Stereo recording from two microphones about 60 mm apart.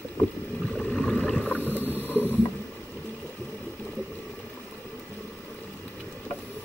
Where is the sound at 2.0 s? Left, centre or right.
Left.